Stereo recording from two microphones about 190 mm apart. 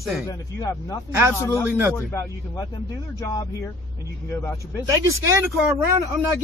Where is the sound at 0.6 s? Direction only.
15° left (ahead or behind).